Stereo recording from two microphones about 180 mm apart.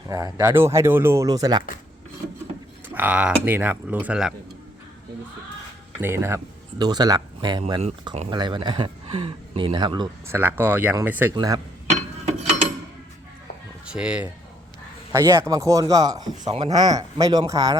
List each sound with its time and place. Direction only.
0.1 s speech: 15° right (ahead or behind)
2.9 s speech: 10° right (ahead or behind)
6.0 s speech: 15° right (ahead or behind)
7.6 s speech: 35° right (ahead or behind)
8.3 s speech: 25° right (ahead or behind)
10.2 s speech: 10° right (ahead or behind)
13.8 s speech: 5° right (ahead or behind)